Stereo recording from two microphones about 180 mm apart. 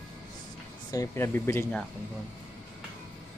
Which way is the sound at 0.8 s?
15° left (ahead or behind).